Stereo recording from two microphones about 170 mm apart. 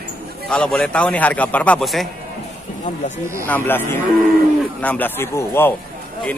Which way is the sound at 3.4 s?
10° left (ahead or behind).